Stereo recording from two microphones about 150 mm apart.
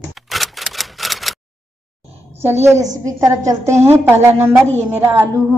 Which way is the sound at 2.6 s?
20° right (ahead or behind).